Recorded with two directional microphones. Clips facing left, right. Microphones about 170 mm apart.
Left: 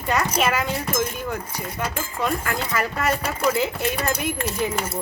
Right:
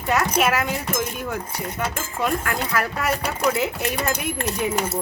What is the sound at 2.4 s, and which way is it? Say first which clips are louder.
A woman's voice: right 1 dB; centre (ahead or behind).